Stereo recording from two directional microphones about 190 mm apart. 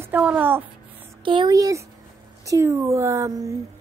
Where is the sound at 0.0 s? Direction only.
10° right (ahead or behind).